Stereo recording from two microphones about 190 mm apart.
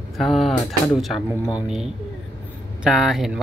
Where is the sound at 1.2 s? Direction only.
20° left (ahead or behind).